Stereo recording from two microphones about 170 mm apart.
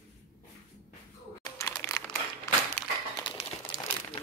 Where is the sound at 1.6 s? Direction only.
10° left (ahead or behind).